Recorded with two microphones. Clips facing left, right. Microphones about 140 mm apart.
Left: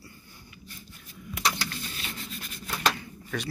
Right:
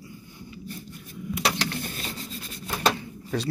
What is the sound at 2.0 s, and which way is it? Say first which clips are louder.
Rub: right 3 dB; 35° right (ahead or behind).